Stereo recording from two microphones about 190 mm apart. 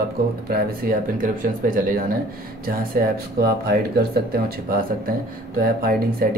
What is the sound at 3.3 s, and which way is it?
Speech, 55° right (ahead or behind).